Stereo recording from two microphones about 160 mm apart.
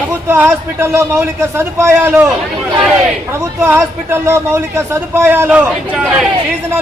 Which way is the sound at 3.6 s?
15° right (ahead or behind).